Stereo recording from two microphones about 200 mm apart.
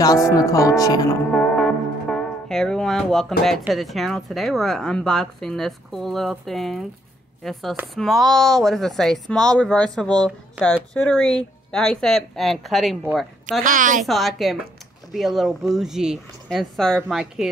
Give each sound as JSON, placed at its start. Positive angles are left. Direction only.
{"t": 0.0, "sound": "speech", "side_deg": 20}
{"t": 1.3, "sound": "speech", "side_deg": 5}
{"t": 13.7, "sound": "a woman's voice", "side_deg": -40}
{"t": 14.0, "sound": "speech", "side_deg": 0}